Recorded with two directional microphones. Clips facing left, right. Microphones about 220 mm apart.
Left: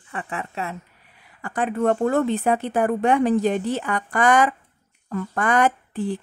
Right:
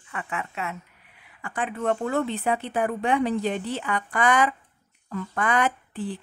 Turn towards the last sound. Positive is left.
turn(degrees=45)  # may be behind; listen again after turning